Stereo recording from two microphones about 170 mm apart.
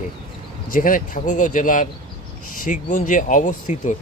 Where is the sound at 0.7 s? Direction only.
55° left (ahead or behind).